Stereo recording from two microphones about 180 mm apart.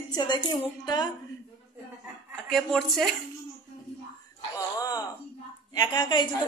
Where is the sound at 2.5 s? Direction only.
Centre (ahead or behind).